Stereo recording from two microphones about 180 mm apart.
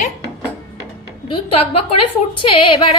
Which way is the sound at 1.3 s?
30° left (ahead or behind).